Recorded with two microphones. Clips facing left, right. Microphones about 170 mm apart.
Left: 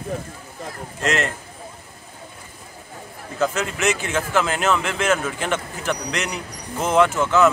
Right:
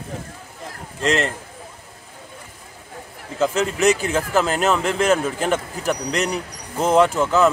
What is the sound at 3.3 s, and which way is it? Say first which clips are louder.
Speech: right 3 dB; 30° right (ahead or behind).